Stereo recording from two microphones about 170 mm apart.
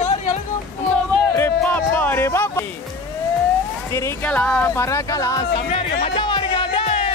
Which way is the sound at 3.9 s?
15° left (ahead or behind).